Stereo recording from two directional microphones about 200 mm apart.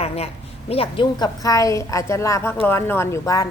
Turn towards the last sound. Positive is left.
turn(degrees=15)  # may be behind; listen again after turning